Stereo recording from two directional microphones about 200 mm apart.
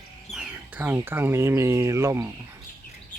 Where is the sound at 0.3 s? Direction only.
5° right (ahead or behind).